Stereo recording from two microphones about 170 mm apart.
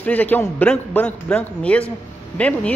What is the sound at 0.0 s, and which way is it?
Speech, 10° left (ahead or behind).